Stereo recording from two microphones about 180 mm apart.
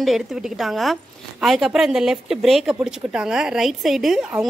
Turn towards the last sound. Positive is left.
turn(degrees=0)  # may be behind; listen again after turning